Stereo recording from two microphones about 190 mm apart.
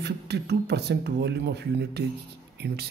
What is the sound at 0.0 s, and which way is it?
Speech, 60° right (ahead or behind).